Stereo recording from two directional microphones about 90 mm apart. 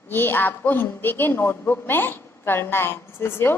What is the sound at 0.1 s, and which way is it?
A woman's voice, 25° left (ahead or behind).